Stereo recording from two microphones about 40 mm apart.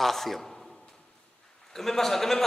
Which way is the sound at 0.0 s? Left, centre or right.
Centre.